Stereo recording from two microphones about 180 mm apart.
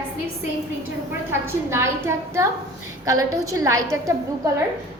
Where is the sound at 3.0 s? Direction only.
15° right (ahead or behind).